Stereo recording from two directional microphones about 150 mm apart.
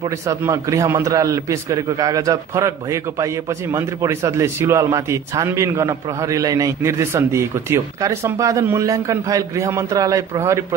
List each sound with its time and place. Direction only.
0.4 s a man's voice: 20° right (ahead or behind)